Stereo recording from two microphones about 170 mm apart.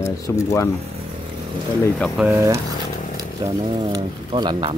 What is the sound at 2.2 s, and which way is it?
Speech, 15° right (ahead or behind).